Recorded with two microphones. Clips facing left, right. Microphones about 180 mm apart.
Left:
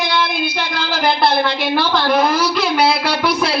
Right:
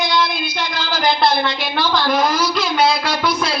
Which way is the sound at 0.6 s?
60° left (ahead or behind).